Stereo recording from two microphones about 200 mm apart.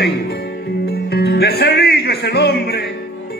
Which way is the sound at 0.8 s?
55° left (ahead or behind).